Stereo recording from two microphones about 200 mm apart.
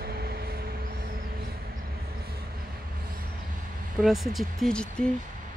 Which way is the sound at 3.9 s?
Centre (ahead or behind).